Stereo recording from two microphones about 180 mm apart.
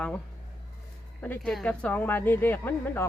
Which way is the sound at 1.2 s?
5° left (ahead or behind).